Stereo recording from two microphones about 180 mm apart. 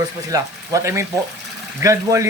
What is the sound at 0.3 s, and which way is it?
Speech, 20° right (ahead or behind).